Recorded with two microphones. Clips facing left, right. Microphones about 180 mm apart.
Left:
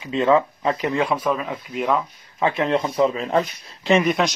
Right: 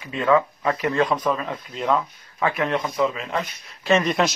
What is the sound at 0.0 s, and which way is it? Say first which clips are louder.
Speech: left 2 dB; 25° left (ahead or behind).